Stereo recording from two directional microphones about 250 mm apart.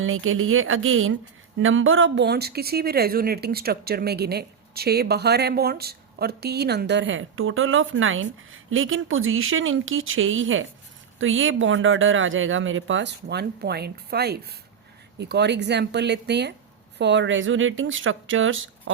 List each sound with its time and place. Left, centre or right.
0.0 s speech: right